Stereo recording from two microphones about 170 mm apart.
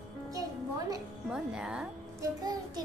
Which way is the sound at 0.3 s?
20° right (ahead or behind).